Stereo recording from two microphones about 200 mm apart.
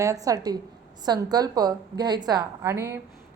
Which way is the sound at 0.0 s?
15° right (ahead or behind).